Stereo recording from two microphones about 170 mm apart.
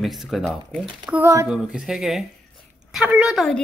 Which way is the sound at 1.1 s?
15° right (ahead or behind).